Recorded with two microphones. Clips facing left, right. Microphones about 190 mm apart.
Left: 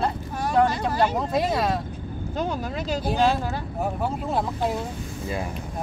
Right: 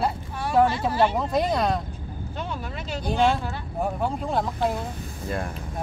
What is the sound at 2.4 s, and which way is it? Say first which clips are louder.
Vehicle: left 6 dB; 40° left (ahead or behind).